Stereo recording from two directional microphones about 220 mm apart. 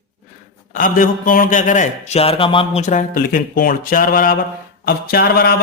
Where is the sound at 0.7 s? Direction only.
40° left (ahead or behind).